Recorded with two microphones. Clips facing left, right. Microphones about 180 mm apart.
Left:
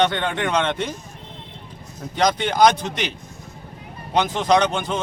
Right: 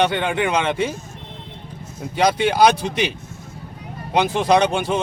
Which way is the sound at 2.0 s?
10° right (ahead or behind).